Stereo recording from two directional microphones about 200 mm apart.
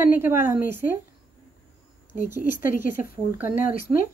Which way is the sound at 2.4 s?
40° left (ahead or behind).